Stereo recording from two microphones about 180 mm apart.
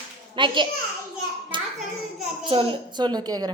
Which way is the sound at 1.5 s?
25° right (ahead or behind).